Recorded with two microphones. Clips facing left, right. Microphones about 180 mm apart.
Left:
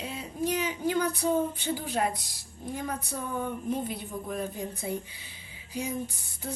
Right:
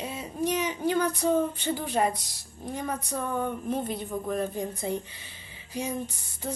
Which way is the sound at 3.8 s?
10° left (ahead or behind).